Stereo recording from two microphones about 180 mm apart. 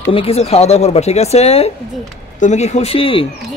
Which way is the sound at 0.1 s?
35° left (ahead or behind).